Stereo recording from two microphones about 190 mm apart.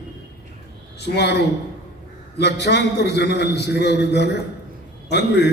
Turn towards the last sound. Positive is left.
turn(degrees=60)  # may be behind; listen again after turning